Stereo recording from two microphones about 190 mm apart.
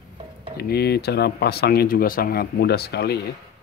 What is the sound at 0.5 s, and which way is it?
Speech, 55° left (ahead or behind).